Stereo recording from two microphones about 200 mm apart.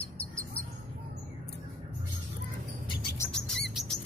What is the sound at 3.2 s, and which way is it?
Bird, 5° left (ahead or behind).